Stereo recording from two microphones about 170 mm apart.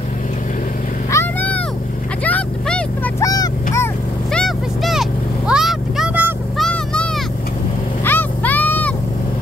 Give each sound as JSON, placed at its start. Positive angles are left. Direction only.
{"t": 1.1, "sound": "vehicle", "side_deg": 10}
{"t": 4.3, "sound": "vehicle", "side_deg": 0}
{"t": 6.6, "sound": "vehicle", "side_deg": 5}